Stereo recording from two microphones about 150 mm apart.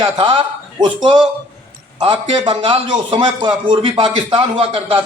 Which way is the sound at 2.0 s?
35° right (ahead or behind).